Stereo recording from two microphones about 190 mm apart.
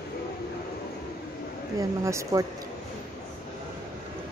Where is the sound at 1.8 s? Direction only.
15° right (ahead or behind).